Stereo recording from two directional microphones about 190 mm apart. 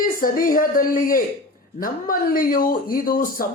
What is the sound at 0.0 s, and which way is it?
Speech, 50° left (ahead or behind).